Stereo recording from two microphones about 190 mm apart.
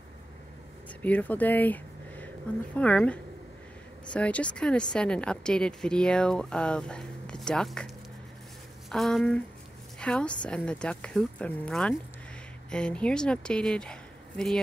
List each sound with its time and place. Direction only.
1.0 s a woman's voice: 10° left (ahead or behind)